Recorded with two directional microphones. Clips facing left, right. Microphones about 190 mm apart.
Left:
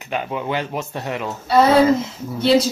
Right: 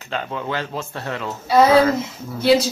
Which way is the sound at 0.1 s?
15° left (ahead or behind).